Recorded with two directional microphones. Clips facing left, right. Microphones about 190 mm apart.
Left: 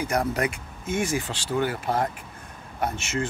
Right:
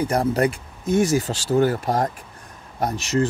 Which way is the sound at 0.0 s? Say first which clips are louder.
Right 5 dB; 30° right (ahead or behind).